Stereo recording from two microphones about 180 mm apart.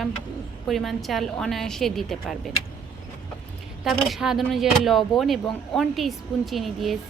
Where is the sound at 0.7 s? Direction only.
Centre (ahead or behind).